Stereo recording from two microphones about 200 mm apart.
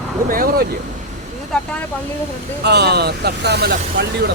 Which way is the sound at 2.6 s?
55° right (ahead or behind).